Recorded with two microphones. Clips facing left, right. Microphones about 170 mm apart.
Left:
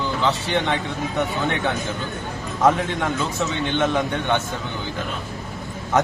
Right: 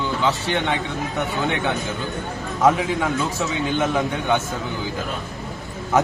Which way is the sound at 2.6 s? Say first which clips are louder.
Right 1 dB; 5° right (ahead or behind).